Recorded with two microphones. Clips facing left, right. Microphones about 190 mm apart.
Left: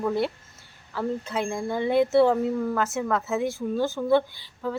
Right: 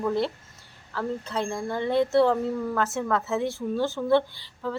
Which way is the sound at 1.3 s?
5° left (ahead or behind).